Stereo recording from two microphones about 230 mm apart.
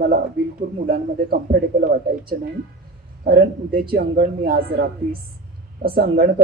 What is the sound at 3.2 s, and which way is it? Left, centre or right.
A man's voice, right.